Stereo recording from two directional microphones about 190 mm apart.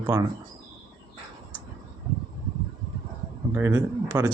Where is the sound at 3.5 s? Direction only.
15° right (ahead or behind).